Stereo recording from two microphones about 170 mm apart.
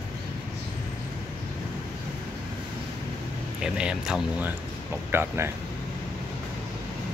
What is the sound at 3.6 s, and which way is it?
Speech, 5° right (ahead or behind).